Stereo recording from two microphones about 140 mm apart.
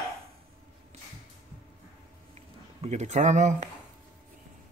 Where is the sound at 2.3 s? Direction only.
50° right (ahead or behind).